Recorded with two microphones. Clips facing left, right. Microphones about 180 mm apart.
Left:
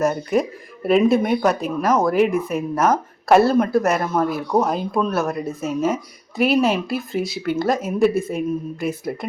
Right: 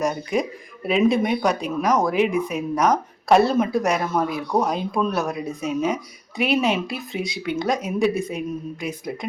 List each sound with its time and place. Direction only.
0.0 s speech: centre (ahead or behind)
2.2 s speech: 50° left (ahead or behind)
2.6 s speech: 5° left (ahead or behind)